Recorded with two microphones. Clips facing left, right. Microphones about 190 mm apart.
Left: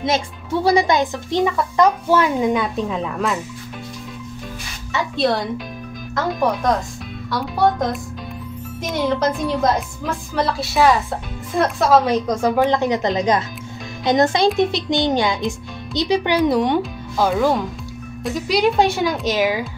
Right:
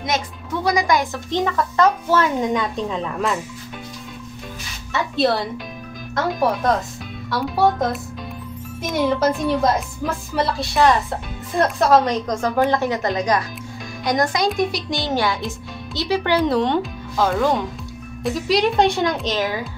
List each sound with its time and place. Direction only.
0.0 s a woman's voice: 30° left (ahead or behind)
1.1 s a child's voice: 15° left (ahead or behind)
5.1 s a child's voice: centre (ahead or behind)